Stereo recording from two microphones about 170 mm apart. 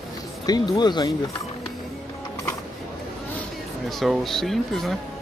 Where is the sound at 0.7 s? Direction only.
25° left (ahead or behind).